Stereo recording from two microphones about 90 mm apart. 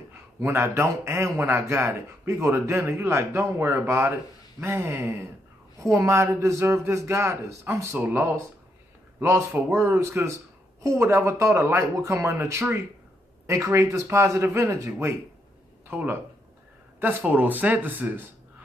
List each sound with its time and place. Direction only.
0.4 s a man's voice: 30° right (ahead or behind)